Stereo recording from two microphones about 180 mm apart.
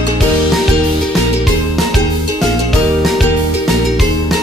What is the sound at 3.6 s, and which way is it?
Music, centre (ahead or behind).